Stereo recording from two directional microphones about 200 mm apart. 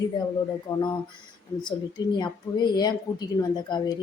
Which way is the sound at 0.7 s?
15° left (ahead or behind).